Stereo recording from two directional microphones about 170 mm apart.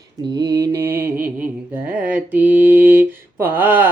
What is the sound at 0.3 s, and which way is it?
Mantra, 25° right (ahead or behind).